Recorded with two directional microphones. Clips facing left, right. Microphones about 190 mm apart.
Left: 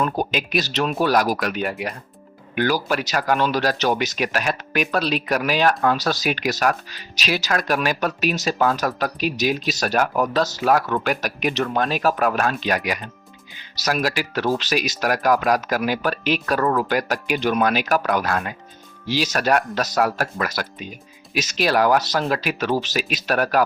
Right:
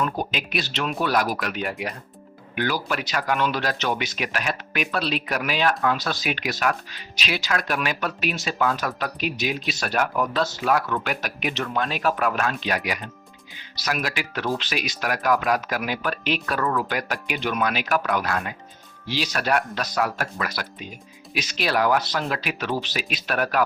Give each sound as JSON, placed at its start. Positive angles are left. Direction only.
{"t": 0.2, "sound": "speech", "side_deg": 40}